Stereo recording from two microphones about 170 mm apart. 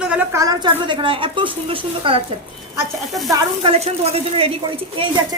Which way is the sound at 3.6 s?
35° right (ahead or behind).